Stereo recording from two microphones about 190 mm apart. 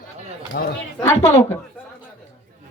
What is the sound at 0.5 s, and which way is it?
Speech, 50° left (ahead or behind).